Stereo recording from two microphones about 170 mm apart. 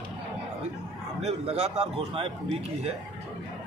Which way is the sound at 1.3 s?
35° right (ahead or behind).